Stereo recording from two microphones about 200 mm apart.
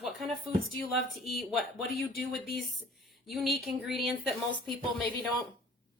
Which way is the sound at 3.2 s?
Centre (ahead or behind).